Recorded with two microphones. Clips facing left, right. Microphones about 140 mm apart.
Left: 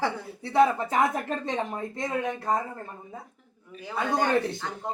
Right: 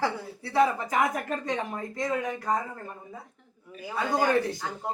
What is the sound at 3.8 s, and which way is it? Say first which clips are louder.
Speech: even; 5° right (ahead or behind).